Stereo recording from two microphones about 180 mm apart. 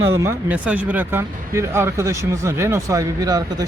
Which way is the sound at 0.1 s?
15° right (ahead or behind).